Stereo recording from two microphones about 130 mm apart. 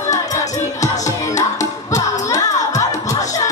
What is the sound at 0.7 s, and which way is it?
Music, 65° left (ahead or behind).